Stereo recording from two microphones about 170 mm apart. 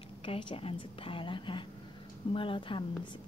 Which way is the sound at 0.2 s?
30° left (ahead or behind).